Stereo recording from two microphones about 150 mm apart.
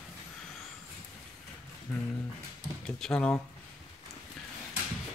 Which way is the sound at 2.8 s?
5° left (ahead or behind).